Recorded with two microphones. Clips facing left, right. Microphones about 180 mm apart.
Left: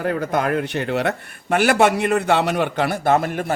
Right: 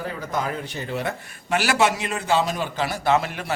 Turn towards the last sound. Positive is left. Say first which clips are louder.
# left 3 dB
turn(degrees=50)  # may be behind; listen again after turning